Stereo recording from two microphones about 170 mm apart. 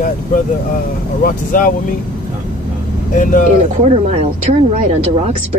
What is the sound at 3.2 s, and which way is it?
Speech, 50° left (ahead or behind).